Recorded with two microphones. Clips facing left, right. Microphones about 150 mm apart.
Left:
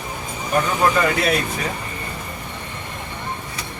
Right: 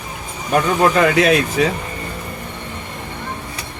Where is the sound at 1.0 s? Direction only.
90° right.